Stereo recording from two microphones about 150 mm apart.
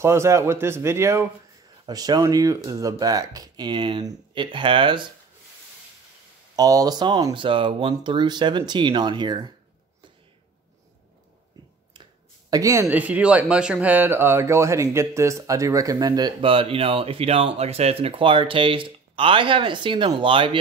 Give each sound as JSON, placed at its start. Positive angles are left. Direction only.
{"t": 0.0, "sound": "speech", "side_deg": -20}
{"t": 6.5, "sound": "speech", "side_deg": -25}
{"t": 12.4, "sound": "speech", "side_deg": -25}
{"t": 12.8, "sound": "speech", "side_deg": -10}